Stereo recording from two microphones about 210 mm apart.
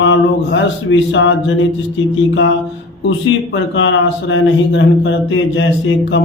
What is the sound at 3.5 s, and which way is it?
Speech, 65° left (ahead or behind).